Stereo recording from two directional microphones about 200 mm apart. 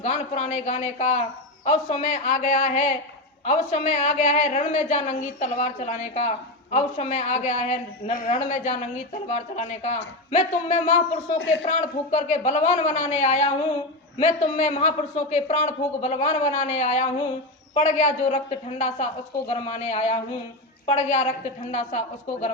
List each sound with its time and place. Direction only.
0.0 s a man's voice: 40° left (ahead or behind)
19.5 s a man's voice: 30° left (ahead or behind)